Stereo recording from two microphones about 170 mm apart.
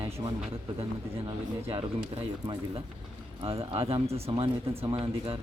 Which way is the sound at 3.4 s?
35° right (ahead or behind).